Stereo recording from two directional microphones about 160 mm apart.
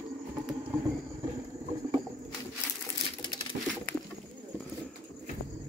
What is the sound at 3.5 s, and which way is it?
Bird, 50° right (ahead or behind).